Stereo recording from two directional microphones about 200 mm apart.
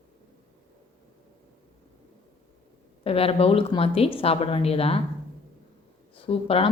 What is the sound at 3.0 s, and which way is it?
Speech, 30° left (ahead or behind).